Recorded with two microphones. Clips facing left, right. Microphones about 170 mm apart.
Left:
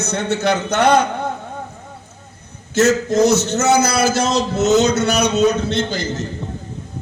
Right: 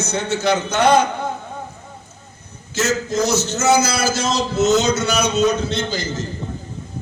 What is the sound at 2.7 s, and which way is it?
A man's voice, 60° left (ahead or behind).